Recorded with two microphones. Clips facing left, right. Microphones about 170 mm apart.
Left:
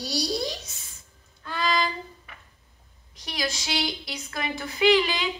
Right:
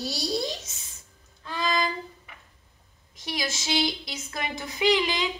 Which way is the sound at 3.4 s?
25° right (ahead or behind).